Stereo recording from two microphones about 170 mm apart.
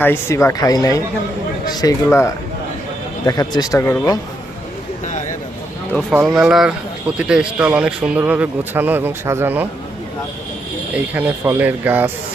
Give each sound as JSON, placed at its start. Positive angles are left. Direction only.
{"t": 0.0, "sound": "speech", "side_deg": 15}
{"t": 6.2, "sound": "a man's voice", "side_deg": 0}
{"t": 10.9, "sound": "a man's voice", "side_deg": -10}